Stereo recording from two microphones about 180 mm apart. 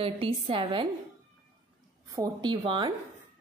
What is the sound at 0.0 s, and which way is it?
Speech, 30° right (ahead or behind).